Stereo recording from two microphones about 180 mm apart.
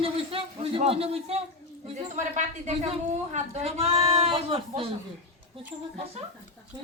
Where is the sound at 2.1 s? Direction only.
40° right (ahead or behind).